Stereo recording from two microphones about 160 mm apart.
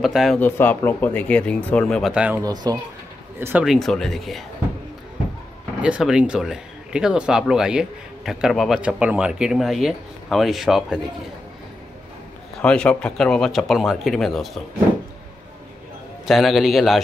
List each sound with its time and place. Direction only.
0.0 s speech: centre (ahead or behind)
0.4 s speech: 15° left (ahead or behind); by 2.4 s 5° right (ahead or behind)
2.4 s speech: 25° right (ahead or behind)
3.3 s speech: 15° right (ahead or behind)
3.6 s speech: centre (ahead or behind)
5.8 s speech: 5° right (ahead or behind)
12.5 s speech: 5° left (ahead or behind)
16.3 s speech: centre (ahead or behind)